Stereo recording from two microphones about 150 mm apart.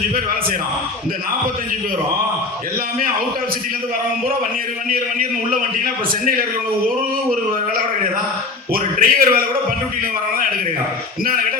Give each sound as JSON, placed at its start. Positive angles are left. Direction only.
{"t": 5.5, "sound": "a man's voice", "side_deg": -70}
{"t": 8.7, "sound": "a man's voice", "side_deg": -70}